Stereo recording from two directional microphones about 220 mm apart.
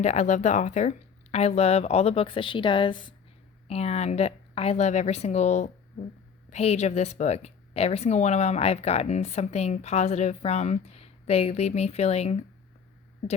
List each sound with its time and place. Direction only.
0.0 s a woman's voice: 30° left (ahead or behind)